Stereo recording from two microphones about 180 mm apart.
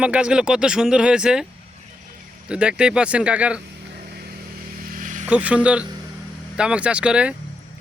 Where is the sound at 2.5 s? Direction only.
5° right (ahead or behind).